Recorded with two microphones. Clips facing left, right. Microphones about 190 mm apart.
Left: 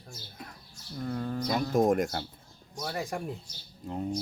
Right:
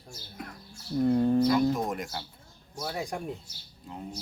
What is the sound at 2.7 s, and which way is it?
Speech, 5° right (ahead or behind).